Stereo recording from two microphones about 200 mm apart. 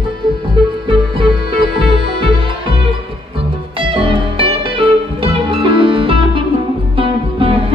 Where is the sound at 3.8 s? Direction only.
25° right (ahead or behind).